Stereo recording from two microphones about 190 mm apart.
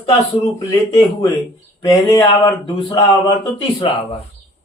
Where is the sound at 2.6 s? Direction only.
20° left (ahead or behind).